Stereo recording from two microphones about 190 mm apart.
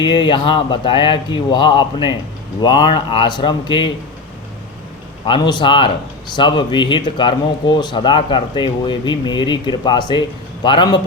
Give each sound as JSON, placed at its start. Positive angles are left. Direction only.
{"t": 0.0, "sound": "speech", "side_deg": 25}
{"t": 5.2, "sound": "speech", "side_deg": 25}